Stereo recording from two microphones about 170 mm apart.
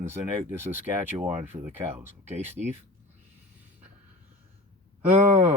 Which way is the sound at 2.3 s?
45° right (ahead or behind).